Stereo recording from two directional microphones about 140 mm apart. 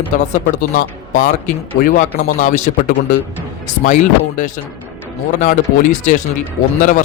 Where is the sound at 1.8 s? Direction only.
85° left.